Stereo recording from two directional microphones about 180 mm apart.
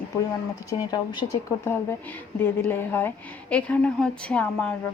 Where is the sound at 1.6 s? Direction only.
10° left (ahead or behind).